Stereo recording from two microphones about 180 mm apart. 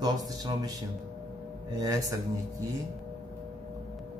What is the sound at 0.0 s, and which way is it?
Speech, 20° right (ahead or behind).